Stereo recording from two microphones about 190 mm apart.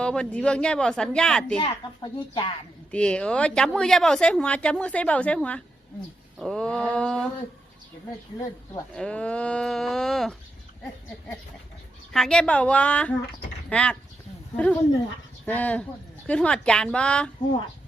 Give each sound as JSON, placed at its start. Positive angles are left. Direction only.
{"t": 0.0, "sound": "speech", "side_deg": 5}
{"t": 1.5, "sound": "a child's voice", "side_deg": 25}
{"t": 2.9, "sound": "speech", "side_deg": 5}
{"t": 9.0, "sound": "speech", "side_deg": 5}
{"t": 12.1, "sound": "a woman's voice", "side_deg": 5}